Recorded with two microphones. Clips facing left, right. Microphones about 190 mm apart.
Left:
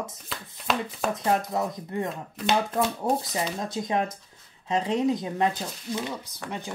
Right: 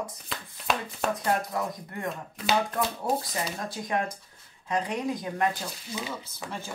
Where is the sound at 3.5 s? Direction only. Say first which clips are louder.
Left 3 dB; 20° left (ahead or behind).